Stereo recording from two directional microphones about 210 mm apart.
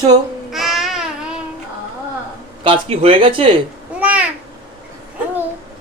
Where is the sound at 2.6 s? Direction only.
25° right (ahead or behind).